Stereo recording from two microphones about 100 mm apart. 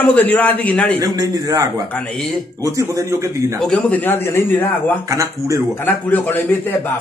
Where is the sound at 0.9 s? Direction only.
40° right (ahead or behind).